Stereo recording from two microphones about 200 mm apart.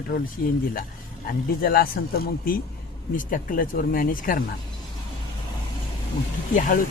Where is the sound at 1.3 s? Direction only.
45° left (ahead or behind).